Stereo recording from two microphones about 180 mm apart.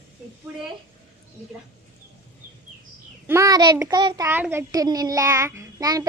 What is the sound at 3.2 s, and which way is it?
Child singing, 15° right (ahead or behind).